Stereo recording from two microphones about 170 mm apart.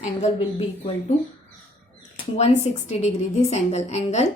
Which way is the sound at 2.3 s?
40° left (ahead or behind).